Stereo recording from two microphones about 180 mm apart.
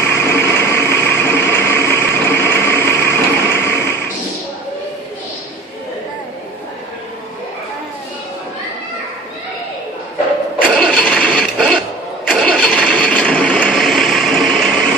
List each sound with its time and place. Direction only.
0.1 s a sound: 15° left (ahead or behind)
10.8 s mechanisms: 5° left (ahead or behind)
12.3 s engine starting: 5° left (ahead or behind)